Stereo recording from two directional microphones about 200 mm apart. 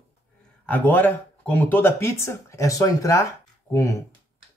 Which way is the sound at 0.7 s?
10° left (ahead or behind).